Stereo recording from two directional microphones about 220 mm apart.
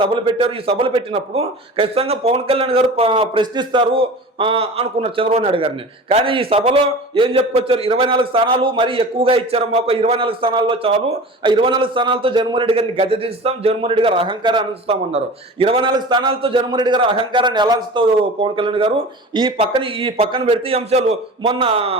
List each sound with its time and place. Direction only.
0.0 s a man's voice: 25° right (ahead or behind)